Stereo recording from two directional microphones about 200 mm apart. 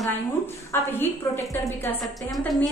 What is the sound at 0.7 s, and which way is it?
A woman's voice, 10° left (ahead or behind).